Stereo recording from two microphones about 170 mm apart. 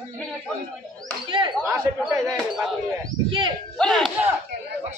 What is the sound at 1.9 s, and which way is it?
Speech, 15° right (ahead or behind).